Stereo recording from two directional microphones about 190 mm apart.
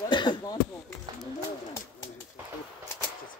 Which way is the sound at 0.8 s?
10° left (ahead or behind).